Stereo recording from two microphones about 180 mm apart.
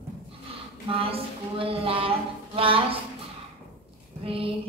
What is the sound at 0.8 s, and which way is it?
Speech, 30° right (ahead or behind).